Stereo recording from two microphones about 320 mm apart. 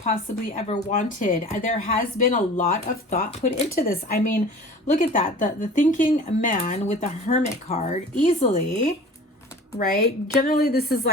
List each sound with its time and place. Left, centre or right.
0.0 s speech: left
9.7 s speech: left